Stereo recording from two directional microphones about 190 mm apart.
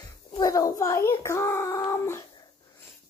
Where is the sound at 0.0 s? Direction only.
20° left (ahead or behind).